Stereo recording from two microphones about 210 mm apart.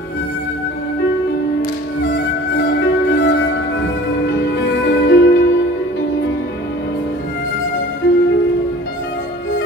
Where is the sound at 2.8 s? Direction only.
55° left (ahead or behind).